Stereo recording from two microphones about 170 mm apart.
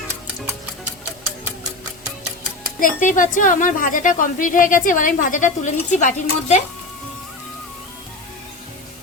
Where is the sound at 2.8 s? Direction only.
50° left (ahead or behind).